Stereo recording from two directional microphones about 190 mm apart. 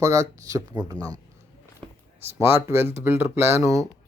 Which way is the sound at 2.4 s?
15° right (ahead or behind).